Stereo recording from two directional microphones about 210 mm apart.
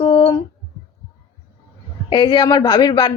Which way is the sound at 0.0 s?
25° left (ahead or behind).